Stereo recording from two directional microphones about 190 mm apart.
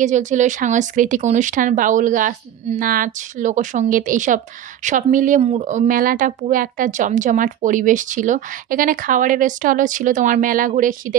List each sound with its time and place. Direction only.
0.0 s speech: 40° right (ahead or behind)